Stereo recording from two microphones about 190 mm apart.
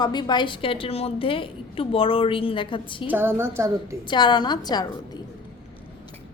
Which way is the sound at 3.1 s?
10° right (ahead or behind).